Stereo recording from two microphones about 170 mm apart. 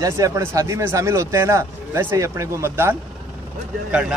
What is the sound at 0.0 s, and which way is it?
Speech, 20° right (ahead or behind).